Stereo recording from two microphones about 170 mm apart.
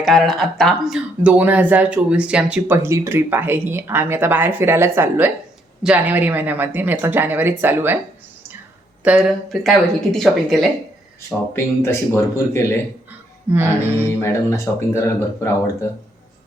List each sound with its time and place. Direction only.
0.0 s speech: centre (ahead or behind)
9.0 s speech: centre (ahead or behind)
11.5 s speech: 15° left (ahead or behind)
13.5 s speech: 15° right (ahead or behind)
14.2 s speech: 15° left (ahead or behind)